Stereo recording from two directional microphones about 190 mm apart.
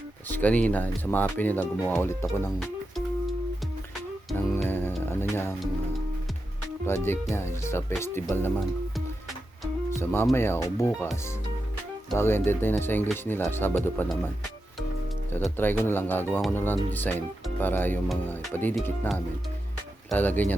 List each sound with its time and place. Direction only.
0.3 s speech: 10° left (ahead or behind)
4.5 s music: 10° left (ahead or behind)
6.8 s speech: 10° left (ahead or behind)
10.0 s speech: 10° left (ahead or behind)
12.1 s speech: 10° left (ahead or behind)
15.3 s speech: 10° left (ahead or behind)